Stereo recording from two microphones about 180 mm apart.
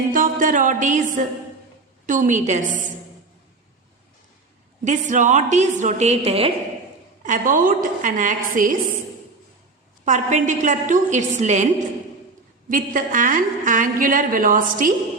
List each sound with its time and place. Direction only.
0.1 s a woman's voice: 50° right (ahead or behind)
4.9 s a woman's voice: 45° right (ahead or behind)
7.2 s a woman's voice: 45° right (ahead or behind)
10.1 s a woman's voice: 40° right (ahead or behind)